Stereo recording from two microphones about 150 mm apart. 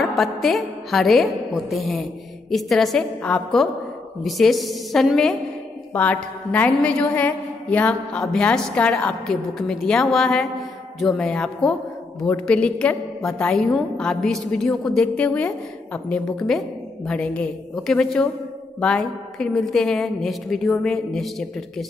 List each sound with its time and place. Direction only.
0.0 s a woman's voice: centre (ahead or behind)